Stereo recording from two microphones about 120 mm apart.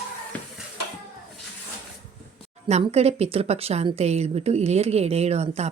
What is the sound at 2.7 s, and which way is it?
Speech, 65° right (ahead or behind).